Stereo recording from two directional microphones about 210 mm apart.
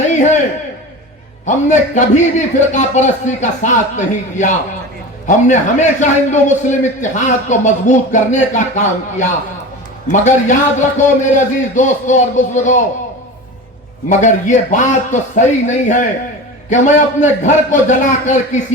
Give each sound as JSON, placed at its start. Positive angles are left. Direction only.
{"t": 1.5, "sound": "a man's voice", "side_deg": 35}
{"t": 14.1, "sound": "a man's voice", "side_deg": 35}